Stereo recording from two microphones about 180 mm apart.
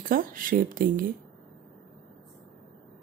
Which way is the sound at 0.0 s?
50° right (ahead or behind).